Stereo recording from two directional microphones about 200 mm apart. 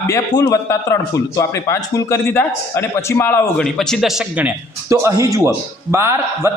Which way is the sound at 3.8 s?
Centre (ahead or behind).